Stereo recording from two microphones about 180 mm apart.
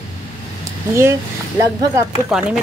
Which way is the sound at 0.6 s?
15° right (ahead or behind).